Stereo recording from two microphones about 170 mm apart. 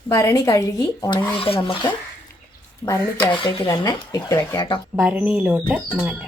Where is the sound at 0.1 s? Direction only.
20° left (ahead or behind).